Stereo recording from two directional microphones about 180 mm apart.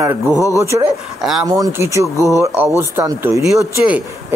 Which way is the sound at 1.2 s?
Centre (ahead or behind).